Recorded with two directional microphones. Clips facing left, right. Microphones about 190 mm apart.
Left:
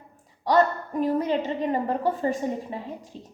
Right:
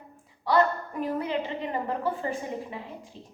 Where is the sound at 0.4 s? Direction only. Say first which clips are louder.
Left 2 dB; 35° left (ahead or behind).